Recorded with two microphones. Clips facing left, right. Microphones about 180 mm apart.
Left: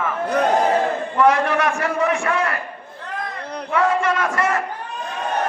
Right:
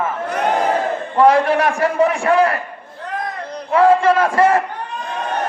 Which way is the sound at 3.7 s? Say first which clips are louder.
Right 7 dB; 30° right (ahead or behind).